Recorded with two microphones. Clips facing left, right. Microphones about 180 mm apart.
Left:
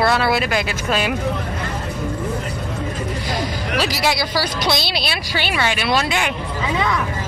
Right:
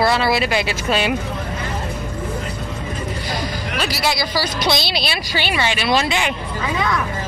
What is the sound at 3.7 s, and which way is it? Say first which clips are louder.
Speech: left 2 dB; 15° left (ahead or behind).